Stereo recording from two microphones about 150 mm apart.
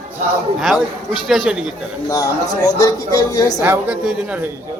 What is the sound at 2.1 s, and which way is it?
A woman's voice, 25° left (ahead or behind).